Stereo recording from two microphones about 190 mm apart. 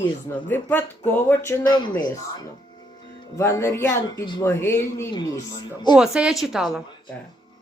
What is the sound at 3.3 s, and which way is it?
Speech, 15° left (ahead or behind).